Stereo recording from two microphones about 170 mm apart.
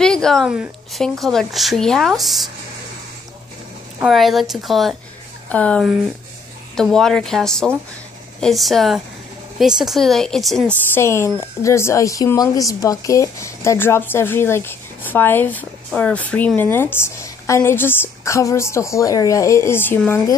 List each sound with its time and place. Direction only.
0.0 s a woman's voice: 5° left (ahead or behind)
4.0 s a woman's voice: centre (ahead or behind)
5.9 s speech: 5° right (ahead or behind)
6.8 s a woman's voice: 5° left (ahead or behind)
11.0 s speech: 15° left (ahead or behind)